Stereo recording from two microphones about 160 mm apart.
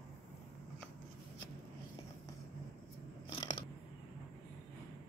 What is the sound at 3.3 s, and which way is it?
Scissors, 25° left (ahead or behind).